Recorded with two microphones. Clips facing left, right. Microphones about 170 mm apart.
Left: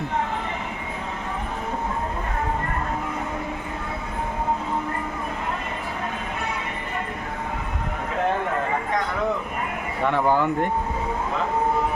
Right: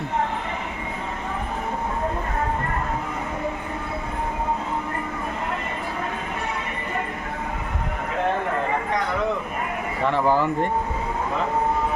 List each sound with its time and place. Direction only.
10.1 s speech: centre (ahead or behind)